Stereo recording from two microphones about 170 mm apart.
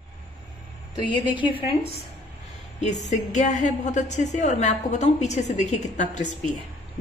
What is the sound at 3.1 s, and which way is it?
A woman's voice, 45° left (ahead or behind).